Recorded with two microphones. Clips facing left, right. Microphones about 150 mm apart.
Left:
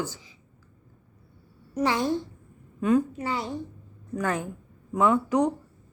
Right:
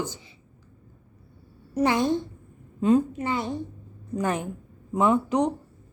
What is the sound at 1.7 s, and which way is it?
A woman's voice, 20° right (ahead or behind).